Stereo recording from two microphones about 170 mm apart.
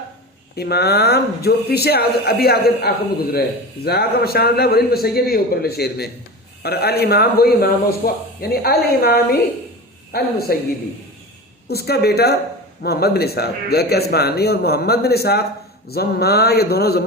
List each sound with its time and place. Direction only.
0.5 s a man's voice: 70° left (ahead or behind)
11.7 s a man's voice: 70° left (ahead or behind)